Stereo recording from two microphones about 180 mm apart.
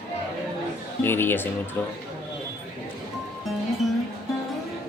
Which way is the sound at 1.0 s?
10° left (ahead or behind).